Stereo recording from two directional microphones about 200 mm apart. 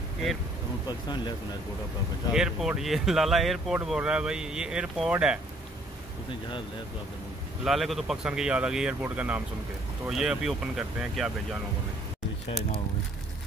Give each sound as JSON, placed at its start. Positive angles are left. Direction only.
{"t": 0.8, "sound": "speech", "side_deg": 20}
{"t": 2.3, "sound": "speech", "side_deg": -5}
{"t": 7.6, "sound": "speech", "side_deg": 0}